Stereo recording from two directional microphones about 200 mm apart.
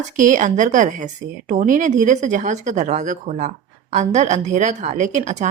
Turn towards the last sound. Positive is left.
turn(degrees=-35)  # may be behind; listen again after turning